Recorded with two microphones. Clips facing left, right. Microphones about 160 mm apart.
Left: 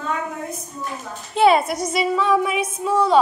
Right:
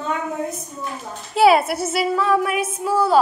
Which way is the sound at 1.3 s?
5° right (ahead or behind).